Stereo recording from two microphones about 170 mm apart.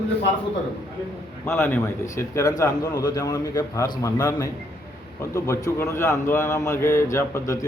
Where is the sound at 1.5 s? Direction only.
15° left (ahead or behind).